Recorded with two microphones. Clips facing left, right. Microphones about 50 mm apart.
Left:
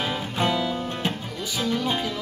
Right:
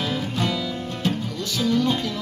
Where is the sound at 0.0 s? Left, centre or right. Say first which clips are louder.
Even; left.